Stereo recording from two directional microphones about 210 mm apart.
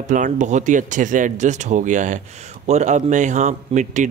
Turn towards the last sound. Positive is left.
turn(degrees=-35)  # may be behind; listen again after turning